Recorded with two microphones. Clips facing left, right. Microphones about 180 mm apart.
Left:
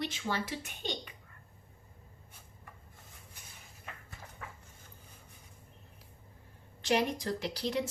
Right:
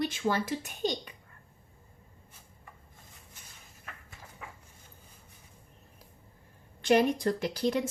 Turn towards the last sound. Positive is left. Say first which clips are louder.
# right 5 dB
turn(degrees=-50)  # may be behind; listen again after turning